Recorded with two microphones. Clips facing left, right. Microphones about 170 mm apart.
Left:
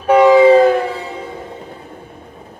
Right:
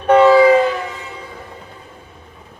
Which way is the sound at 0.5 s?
40° left (ahead or behind).